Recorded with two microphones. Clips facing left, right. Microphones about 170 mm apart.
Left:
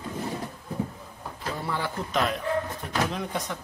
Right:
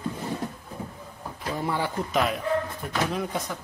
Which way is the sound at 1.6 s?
15° right (ahead or behind).